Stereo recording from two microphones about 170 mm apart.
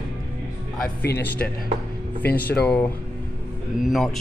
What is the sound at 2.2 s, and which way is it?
Speech, 65° left (ahead or behind).